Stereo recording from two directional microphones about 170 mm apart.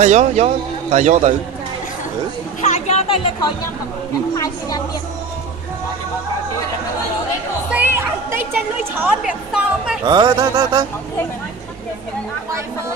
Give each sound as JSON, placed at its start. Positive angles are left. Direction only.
{"t": 0.0, "sound": "a man's voice", "side_deg": -45}
{"t": 2.6, "sound": "a woman's voice", "side_deg": 40}
{"t": 7.7, "sound": "a woman's voice", "side_deg": -15}
{"t": 10.0, "sound": "a sound", "side_deg": -25}